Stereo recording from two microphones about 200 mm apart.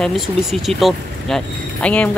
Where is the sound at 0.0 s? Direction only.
Centre (ahead or behind).